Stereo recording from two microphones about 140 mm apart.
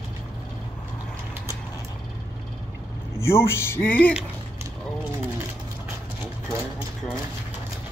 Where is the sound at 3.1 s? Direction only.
20° left (ahead or behind).